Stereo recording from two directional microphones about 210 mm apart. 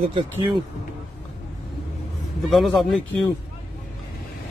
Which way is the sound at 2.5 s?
Centre (ahead or behind).